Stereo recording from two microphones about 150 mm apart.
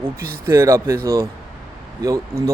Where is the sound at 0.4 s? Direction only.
20° right (ahead or behind).